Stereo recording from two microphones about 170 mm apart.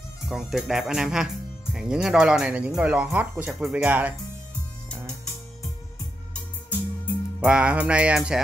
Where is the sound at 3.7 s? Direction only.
10° right (ahead or behind).